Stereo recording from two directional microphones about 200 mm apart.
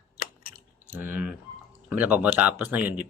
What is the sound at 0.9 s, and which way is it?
Speech, 10° right (ahead or behind).